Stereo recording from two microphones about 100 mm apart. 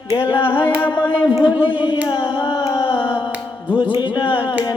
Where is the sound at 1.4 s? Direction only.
55° left (ahead or behind).